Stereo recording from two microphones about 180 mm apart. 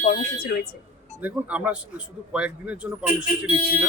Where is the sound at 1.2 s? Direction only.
5° right (ahead or behind).